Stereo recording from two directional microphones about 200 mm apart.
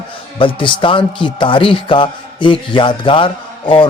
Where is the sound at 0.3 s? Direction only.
25° left (ahead or behind).